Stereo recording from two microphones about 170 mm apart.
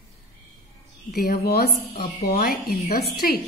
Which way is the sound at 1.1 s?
60° left (ahead or behind).